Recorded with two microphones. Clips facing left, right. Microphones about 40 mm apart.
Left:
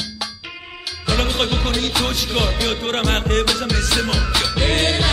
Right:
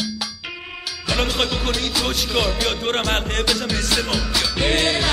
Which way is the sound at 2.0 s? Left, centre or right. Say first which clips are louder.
Left 3 dB; left.